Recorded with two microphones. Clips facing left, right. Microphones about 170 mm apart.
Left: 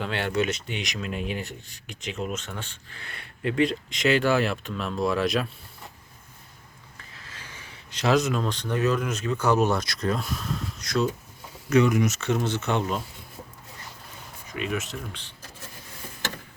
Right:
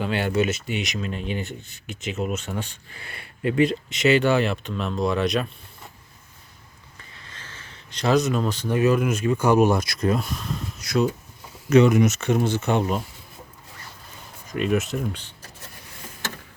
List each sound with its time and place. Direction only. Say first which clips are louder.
0.0 s speech: right 3 dB; 5° right (ahead or behind)
7.1 s speech: right 1 dB; 5° left (ahead or behind)
11.7 s speech: right 5 dB; 25° right (ahead or behind)
14.5 s speech: right 7 dB; 45° right (ahead or behind)